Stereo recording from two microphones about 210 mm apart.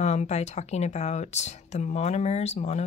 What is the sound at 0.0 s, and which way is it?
A woman's voice, 30° left (ahead or behind).